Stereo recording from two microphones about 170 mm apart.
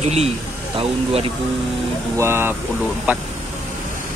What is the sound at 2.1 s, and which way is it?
Speech, 15° right (ahead or behind).